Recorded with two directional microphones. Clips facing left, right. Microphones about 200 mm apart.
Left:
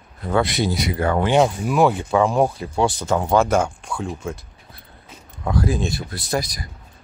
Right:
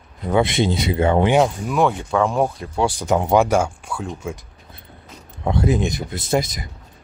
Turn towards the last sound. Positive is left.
turn(degrees=-25)  # may be behind; listen again after turning